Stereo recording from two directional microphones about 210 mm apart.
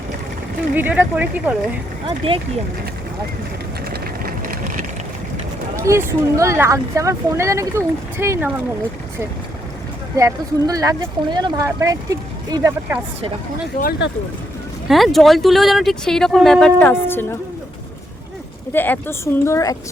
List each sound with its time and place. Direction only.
0.8 s speech: 10° right (ahead or behind)
2.0 s speech: 25° right (ahead or behind)
3.8 s vehicle: 45° right (ahead or behind)
5.8 s speech: 15° right (ahead or behind)
10.2 s speech: 15° right (ahead or behind)
14.8 s speech: centre (ahead or behind)
18.7 s speech: 10° left (ahead or behind)